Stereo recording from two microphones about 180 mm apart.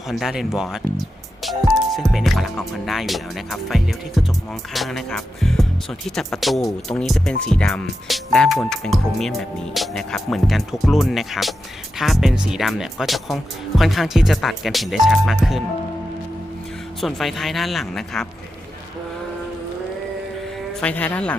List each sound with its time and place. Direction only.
0.1 s speech: centre (ahead or behind)
17.0 s speech: centre (ahead or behind)
20.8 s speech: 10° left (ahead or behind)